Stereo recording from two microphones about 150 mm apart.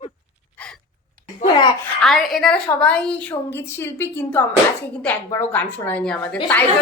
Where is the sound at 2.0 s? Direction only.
Centre (ahead or behind).